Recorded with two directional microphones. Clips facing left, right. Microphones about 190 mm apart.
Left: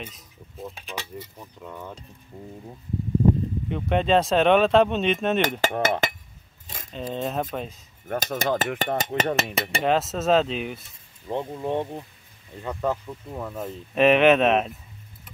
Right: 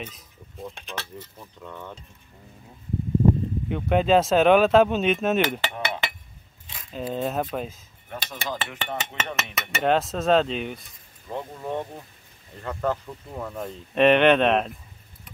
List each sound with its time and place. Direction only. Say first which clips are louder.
0.0 s speech: right 1 dB; centre (ahead or behind)
2.3 s speech: left 11 dB; 40° left (ahead or behind)
3.6 s speech: right 2 dB; centre (ahead or behind)
5.6 s speech: left 6 dB; 45° left (ahead or behind)
6.9 s speech: right 1 dB; 5° right (ahead or behind)
8.1 s speech: left 8 dB; 50° left (ahead or behind); by 9.8 s 30° left (ahead or behind)
9.8 s speech: right 1 dB; centre (ahead or behind)
11.2 s speech: left 4 dB; 25° left (ahead or behind)
12.6 s speech: even; 10° left (ahead or behind)